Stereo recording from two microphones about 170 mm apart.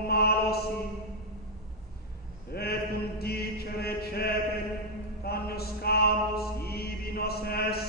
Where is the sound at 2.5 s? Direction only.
65° left (ahead or behind).